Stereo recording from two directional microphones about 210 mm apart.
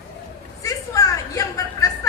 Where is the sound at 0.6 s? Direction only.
15° left (ahead or behind).